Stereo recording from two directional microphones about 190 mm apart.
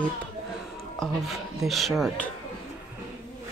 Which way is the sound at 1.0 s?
Centre (ahead or behind).